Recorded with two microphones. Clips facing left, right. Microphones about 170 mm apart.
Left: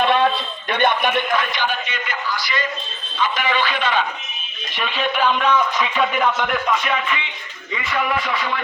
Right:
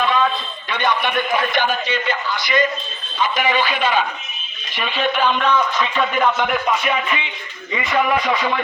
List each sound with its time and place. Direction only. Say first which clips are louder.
0.0 s a sound: left 2 dB; 60° left (ahead or behind)
1.9 s a man's voice: right 4 dB; 25° right (ahead or behind)
3.3 s music: right 4 dB; 10° right (ahead or behind)
4.7 s a man's voice: right 2 dB; centre (ahead or behind)
6.5 s music: right 1 dB; 15° right (ahead or behind)
7.7 s a man's voice: right 4 dB; 20° right (ahead or behind)